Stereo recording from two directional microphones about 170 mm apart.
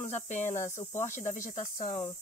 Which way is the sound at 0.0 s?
40° left (ahead or behind).